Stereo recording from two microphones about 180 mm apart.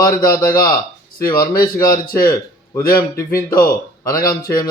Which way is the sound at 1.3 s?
20° left (ahead or behind).